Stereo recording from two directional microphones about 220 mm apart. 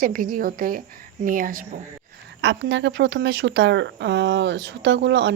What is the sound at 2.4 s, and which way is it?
Speech, 55° right (ahead or behind).